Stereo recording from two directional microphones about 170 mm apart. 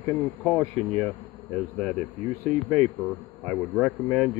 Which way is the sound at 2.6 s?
10° right (ahead or behind).